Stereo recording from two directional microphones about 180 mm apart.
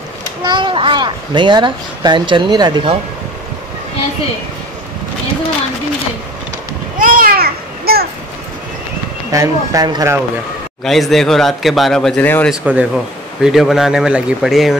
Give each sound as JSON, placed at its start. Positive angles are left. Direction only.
{"t": 0.4, "sound": "a child's voice", "side_deg": -25}
{"t": 7.0, "sound": "babbling", "side_deg": -50}
{"t": 9.3, "sound": "speech", "side_deg": -20}
{"t": 10.8, "sound": "a man's voice", "side_deg": 0}
{"t": 12.4, "sound": "a man's voice", "side_deg": -5}